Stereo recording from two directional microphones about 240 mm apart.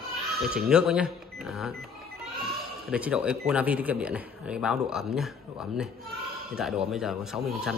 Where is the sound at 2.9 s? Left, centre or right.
Centre.